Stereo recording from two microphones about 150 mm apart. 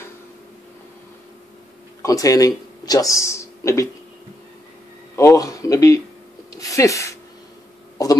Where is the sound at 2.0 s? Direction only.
20° left (ahead or behind).